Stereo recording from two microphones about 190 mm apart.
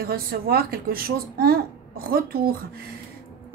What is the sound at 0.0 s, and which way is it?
A woman's voice, 50° right (ahead or behind).